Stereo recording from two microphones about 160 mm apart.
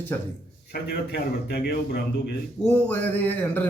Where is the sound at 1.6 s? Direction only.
80° left.